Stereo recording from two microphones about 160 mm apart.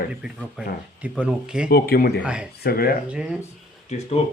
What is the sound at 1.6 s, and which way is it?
Speech, 70° left (ahead or behind).